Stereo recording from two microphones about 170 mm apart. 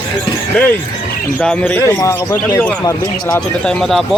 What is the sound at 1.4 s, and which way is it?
A man's voice, 10° left (ahead or behind).